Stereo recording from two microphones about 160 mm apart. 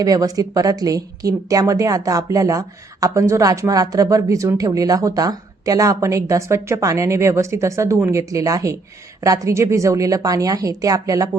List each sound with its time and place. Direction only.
0.0 s a woman's voice: 20° right (ahead or behind)